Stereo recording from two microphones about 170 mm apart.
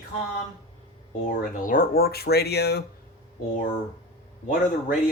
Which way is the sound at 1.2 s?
55° left (ahead or behind).